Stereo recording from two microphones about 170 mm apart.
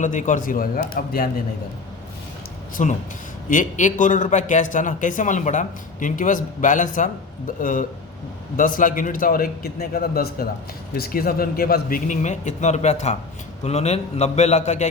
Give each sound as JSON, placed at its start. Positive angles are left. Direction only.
{"t": 0.0, "sound": "a man's voice", "side_deg": 50}
{"t": 2.8, "sound": "a man's voice", "side_deg": 50}